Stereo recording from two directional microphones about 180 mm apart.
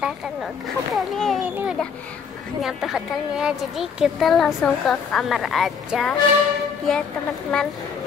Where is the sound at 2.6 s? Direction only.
Centre (ahead or behind).